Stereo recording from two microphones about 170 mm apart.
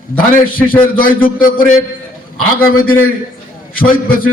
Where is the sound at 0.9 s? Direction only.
55° left (ahead or behind).